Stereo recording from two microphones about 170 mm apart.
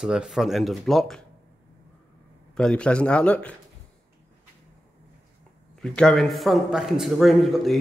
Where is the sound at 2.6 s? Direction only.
5° left (ahead or behind).